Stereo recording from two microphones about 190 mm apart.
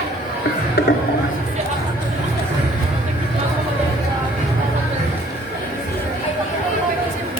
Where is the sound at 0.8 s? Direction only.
60° left (ahead or behind).